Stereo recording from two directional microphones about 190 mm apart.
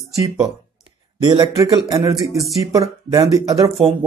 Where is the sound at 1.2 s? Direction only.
20° right (ahead or behind).